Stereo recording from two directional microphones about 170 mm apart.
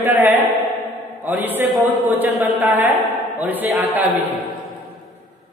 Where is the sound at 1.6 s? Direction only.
10° right (ahead or behind).